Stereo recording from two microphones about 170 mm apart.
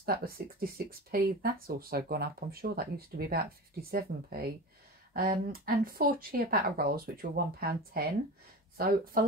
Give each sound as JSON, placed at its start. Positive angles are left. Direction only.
{"t": 0.0, "sound": "speech", "side_deg": -60}